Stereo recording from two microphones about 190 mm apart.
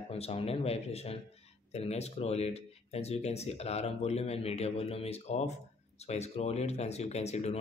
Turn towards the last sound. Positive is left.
turn(degrees=35)  # may be behind; listen again after turning